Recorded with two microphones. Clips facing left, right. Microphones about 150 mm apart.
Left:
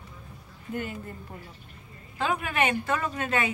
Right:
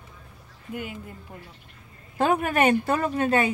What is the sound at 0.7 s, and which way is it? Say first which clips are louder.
Speech: left 1 dB; 10° right (ahead or behind).